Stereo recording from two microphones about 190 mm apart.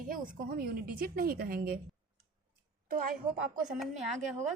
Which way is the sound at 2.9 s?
45° right (ahead or behind).